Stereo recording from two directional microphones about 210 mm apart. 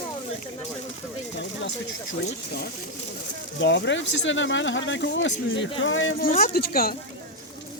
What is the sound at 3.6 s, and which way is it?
Speech, 60° left (ahead or behind).